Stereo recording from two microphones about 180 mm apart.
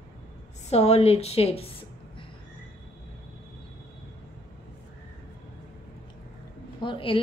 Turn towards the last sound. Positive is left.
turn(degrees=30)  # may be behind; listen again after turning